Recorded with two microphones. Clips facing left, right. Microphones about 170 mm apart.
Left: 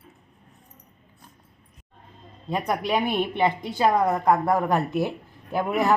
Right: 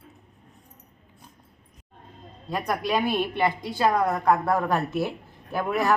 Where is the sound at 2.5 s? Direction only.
20° left (ahead or behind).